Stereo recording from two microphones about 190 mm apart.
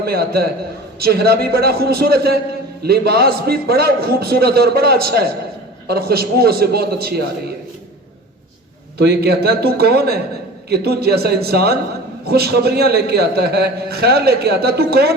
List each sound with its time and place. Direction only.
0.0 s a man's voice: 55° right (ahead or behind)
9.0 s a man's voice: 55° right (ahead or behind)